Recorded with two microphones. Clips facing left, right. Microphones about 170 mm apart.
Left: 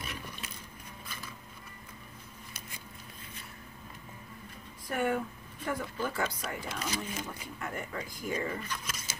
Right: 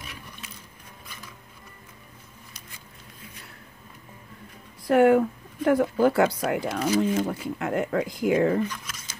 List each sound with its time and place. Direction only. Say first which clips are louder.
4.8 s speech: right 13 dB; 75° right (ahead or behind)